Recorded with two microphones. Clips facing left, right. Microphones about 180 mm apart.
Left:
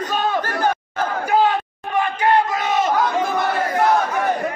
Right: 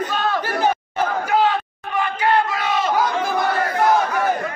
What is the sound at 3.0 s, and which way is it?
Battle cry, centre (ahead or behind).